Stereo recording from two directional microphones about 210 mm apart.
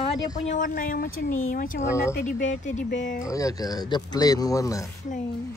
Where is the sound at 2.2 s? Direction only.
40° left (ahead or behind).